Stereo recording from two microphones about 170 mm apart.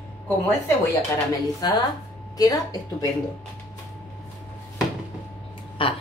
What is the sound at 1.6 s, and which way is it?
A woman's voice, 25° left (ahead or behind).